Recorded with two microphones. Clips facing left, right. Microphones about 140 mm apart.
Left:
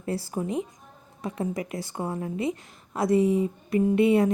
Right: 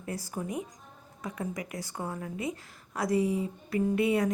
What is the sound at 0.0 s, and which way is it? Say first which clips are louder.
A woman's voice: left 6 dB; 30° left (ahead or behind).